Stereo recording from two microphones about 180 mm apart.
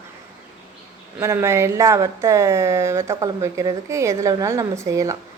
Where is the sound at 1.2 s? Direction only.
15° right (ahead or behind).